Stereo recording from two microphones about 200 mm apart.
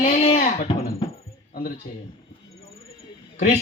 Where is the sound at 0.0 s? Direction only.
35° left (ahead or behind).